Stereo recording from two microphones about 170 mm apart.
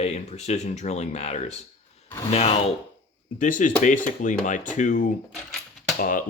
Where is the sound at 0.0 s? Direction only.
40° left (ahead or behind).